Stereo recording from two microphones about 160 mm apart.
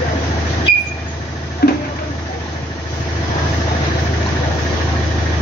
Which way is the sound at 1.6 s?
70° left (ahead or behind).